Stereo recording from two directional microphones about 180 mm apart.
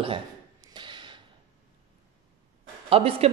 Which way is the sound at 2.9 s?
35° right (ahead or behind).